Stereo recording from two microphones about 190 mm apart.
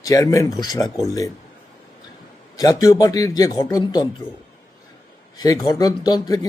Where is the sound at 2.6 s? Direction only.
20° left (ahead or behind).